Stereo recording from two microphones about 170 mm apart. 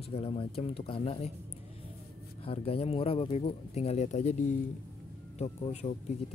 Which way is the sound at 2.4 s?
35° left (ahead or behind).